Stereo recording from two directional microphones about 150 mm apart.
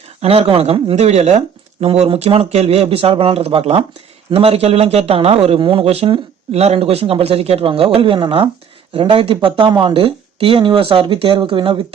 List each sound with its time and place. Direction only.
0.2 s speech: 40° right (ahead or behind)